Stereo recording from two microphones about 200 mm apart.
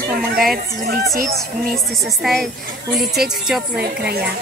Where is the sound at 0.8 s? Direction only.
50° right (ahead or behind).